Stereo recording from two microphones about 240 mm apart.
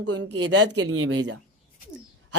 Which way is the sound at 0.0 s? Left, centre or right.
Right.